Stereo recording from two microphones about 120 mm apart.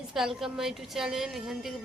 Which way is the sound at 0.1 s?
5° right (ahead or behind).